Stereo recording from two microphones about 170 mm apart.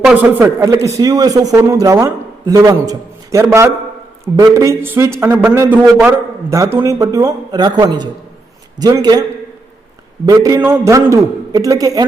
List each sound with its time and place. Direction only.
0.0 s a man's voice: 10° right (ahead or behind)
10.2 s speech: 20° right (ahead or behind)